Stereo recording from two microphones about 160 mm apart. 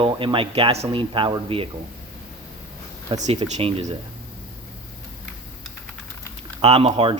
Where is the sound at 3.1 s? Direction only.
45° right (ahead or behind).